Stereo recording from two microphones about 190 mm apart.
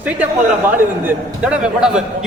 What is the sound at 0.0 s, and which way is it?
A man's voice, 10° right (ahead or behind).